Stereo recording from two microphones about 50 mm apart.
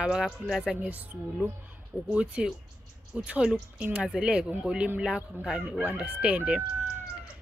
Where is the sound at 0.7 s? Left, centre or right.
Right.